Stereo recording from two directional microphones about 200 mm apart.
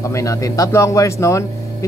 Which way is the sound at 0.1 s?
15° left (ahead or behind).